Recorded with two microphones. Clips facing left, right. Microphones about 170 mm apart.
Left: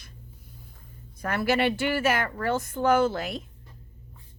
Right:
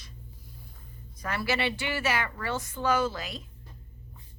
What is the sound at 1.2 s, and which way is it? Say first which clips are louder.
Speech: left 5 dB; 55° left (ahead or behind).